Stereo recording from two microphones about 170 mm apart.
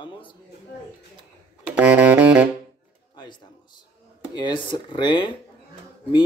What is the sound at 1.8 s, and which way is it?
Music, 10° right (ahead or behind).